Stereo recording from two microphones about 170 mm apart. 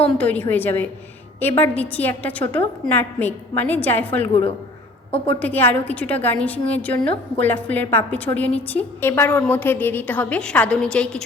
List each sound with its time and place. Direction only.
0.0 s a woman's voice: 10° left (ahead or behind)
5.1 s a woman's voice: 35° left (ahead or behind)
5.4 s a woman's voice: 10° left (ahead or behind)